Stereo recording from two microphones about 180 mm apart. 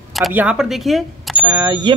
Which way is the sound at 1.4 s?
15° right (ahead or behind).